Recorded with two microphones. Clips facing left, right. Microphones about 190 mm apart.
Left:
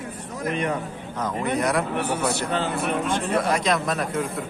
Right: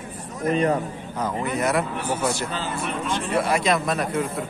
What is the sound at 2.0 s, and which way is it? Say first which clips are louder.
Speech: even; 65° left (ahead or behind).